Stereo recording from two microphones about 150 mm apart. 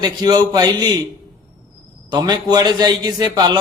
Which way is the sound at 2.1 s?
30° right (ahead or behind).